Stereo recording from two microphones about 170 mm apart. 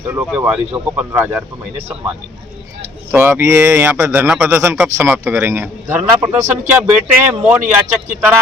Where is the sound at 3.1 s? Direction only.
15° right (ahead or behind).